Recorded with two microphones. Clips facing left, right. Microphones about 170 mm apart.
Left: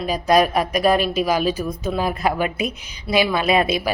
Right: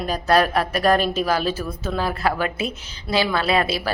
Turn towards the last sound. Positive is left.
turn(degrees=20)  # may be behind; listen again after turning